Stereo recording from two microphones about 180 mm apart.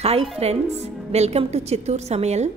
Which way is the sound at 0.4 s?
35° right (ahead or behind).